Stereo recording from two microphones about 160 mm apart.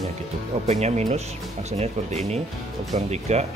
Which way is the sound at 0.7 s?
45° right (ahead or behind).